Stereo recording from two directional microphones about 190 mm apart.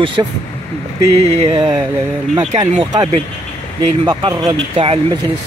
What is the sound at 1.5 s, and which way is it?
Speech, 25° right (ahead or behind).